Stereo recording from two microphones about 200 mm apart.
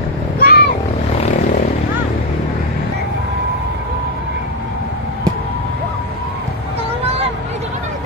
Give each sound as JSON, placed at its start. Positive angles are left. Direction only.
{"t": 0.4, "sound": "vehicle", "side_deg": 50}